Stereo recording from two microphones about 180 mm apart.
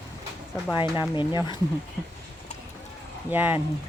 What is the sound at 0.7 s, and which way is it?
Speech, 25° left (ahead or behind).